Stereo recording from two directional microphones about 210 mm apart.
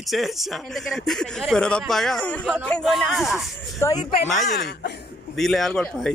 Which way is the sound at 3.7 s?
15° left (ahead or behind).